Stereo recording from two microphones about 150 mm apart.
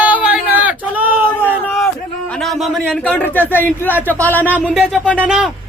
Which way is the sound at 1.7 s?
5° left (ahead or behind).